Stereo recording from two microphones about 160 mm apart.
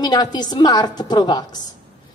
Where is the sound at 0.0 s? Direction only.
25° left (ahead or behind).